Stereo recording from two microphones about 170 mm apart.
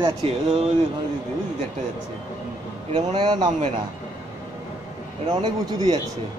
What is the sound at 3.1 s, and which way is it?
Speech, 25° right (ahead or behind).